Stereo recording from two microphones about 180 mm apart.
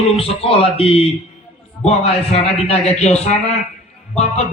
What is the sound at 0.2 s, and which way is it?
A man's voice, 30° left (ahead or behind).